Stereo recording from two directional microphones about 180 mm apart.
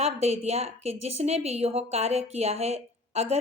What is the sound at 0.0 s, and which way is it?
Speech, 35° right (ahead or behind).